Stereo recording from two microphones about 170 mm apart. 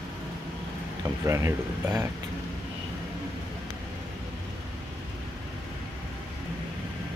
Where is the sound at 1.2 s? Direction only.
15° right (ahead or behind).